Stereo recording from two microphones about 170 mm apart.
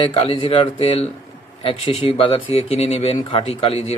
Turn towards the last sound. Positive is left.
turn(degrees=35)  # may be behind; listen again after turning